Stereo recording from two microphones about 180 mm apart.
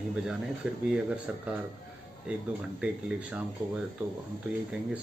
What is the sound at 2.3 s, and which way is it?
Speech, 5° right (ahead or behind).